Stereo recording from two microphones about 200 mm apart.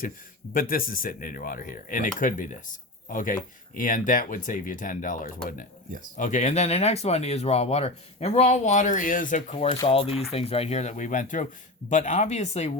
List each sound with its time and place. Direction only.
0.5 s speech: 45° left (ahead or behind)